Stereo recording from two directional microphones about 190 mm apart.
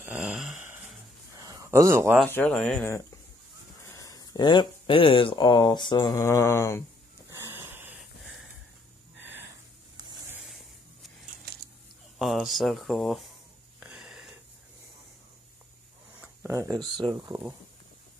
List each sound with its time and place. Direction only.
0.0 s a sound: 10° right (ahead or behind)
1.4 s a sound: 15° right (ahead or behind)
2.2 s speech: 10° left (ahead or behind)
3.8 s speech: 15° left (ahead or behind)
7.2 s wheeze: 10° right (ahead or behind)
10.3 s a sound: centre (ahead or behind)
12.2 s speech: centre (ahead or behind)
13.7 s wheeze: 5° right (ahead or behind)
16.2 s speech: 15° right (ahead or behind)